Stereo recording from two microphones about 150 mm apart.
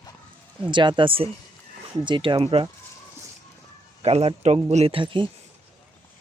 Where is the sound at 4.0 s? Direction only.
45° right (ahead or behind).